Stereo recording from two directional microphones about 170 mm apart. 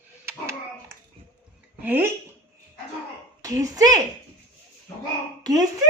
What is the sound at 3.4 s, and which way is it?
Speech, 20° right (ahead or behind).